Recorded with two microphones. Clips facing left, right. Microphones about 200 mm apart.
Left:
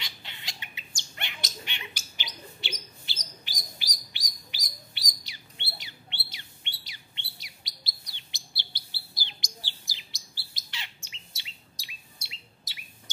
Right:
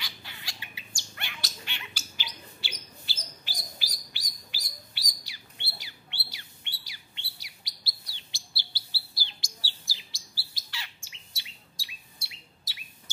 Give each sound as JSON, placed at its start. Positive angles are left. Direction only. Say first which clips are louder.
{"t": 0.0, "sound": "bird", "louder": "even", "side_deg": 20}